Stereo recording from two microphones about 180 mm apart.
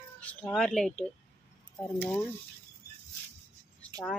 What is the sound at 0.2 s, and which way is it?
Speech, 5° left (ahead or behind).